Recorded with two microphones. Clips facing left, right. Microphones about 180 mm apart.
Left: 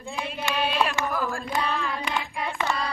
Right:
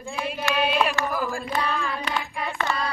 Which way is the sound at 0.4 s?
5° right (ahead or behind).